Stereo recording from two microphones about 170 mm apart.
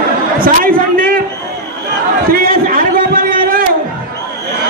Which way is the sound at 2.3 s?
55° right (ahead or behind).